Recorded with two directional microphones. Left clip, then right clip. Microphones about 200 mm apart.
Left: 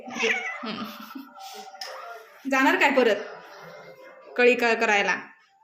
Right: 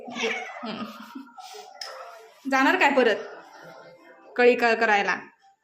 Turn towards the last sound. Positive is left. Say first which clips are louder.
# right 1 dB
turn(degrees=0)  # may be behind; listen again after turning